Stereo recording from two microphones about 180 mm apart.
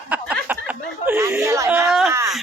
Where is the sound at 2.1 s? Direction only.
15° right (ahead or behind).